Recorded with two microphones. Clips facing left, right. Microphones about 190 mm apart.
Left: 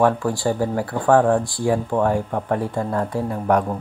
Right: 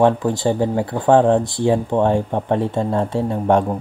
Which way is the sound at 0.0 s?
20° right (ahead or behind).